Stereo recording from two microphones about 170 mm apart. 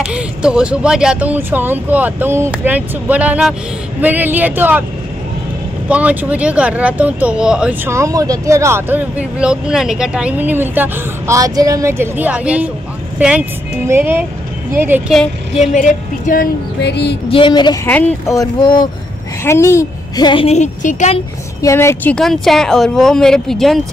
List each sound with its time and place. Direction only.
0.0 s speech: 5° right (ahead or behind)
5.9 s speech: 10° right (ahead or behind)
7.9 s speech: 20° right (ahead or behind)
15.7 s a woman's voice: 50° left (ahead or behind)
16.8 s music: 85° left
17.3 s speech: 30° left (ahead or behind)
17.8 s a woman's voice: 10° left (ahead or behind)
20.4 s a woman's voice: 45° left (ahead or behind)
21.5 s a woman's voice: 15° left (ahead or behind)
22.1 s speech: centre (ahead or behind)